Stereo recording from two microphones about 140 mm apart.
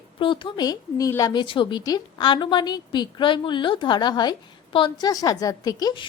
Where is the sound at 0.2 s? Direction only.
35° left (ahead or behind).